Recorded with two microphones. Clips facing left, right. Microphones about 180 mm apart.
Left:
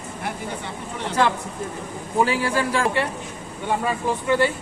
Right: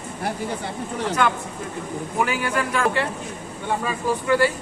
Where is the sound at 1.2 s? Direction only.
30° left (ahead or behind).